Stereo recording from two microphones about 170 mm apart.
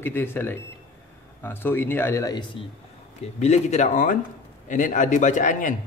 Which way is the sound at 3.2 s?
40° left (ahead or behind).